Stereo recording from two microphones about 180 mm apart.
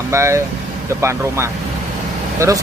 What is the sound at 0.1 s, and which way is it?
Speech, 15° right (ahead or behind).